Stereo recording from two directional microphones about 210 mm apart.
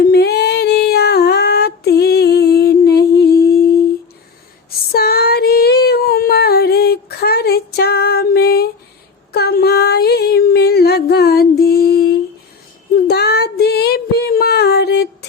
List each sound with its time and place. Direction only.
0.0 s female singing: 50° left (ahead or behind)
4.9 s female singing: 50° left (ahead or behind)
9.3 s a sound: 50° left (ahead or behind)
13.1 s child singing: 50° left (ahead or behind)